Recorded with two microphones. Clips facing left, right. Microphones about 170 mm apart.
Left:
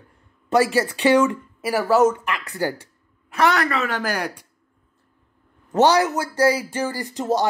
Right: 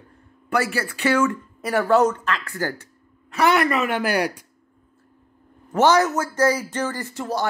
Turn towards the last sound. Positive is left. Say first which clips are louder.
# left 4 dB
turn(degrees=20)  # may be behind; listen again after turning